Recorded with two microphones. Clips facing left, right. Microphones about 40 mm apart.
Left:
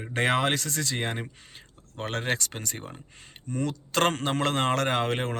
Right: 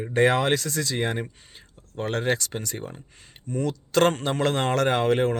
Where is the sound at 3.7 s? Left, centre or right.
Left.